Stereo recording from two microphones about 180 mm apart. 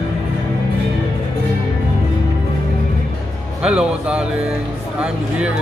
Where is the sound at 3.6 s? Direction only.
5° right (ahead or behind).